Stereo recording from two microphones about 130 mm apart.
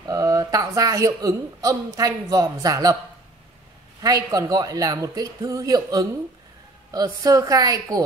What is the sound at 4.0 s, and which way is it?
A woman's voice, 30° right (ahead or behind).